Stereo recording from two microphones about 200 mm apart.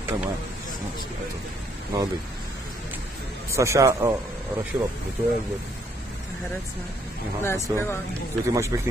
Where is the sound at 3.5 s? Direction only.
15° right (ahead or behind).